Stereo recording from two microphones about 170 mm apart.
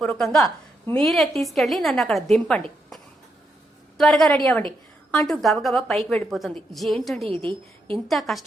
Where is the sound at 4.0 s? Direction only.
Centre (ahead or behind).